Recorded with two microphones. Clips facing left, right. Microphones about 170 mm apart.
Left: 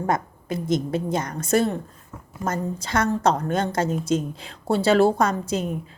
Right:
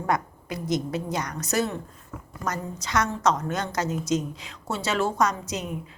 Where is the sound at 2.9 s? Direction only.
55° left (ahead or behind).